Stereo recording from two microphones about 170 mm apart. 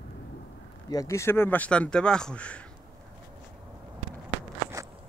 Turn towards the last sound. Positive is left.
turn(degrees=-20)  # may be behind; listen again after turning